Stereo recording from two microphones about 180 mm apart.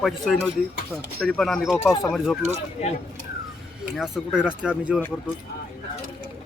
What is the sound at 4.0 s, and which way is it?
Speech, 5° right (ahead or behind).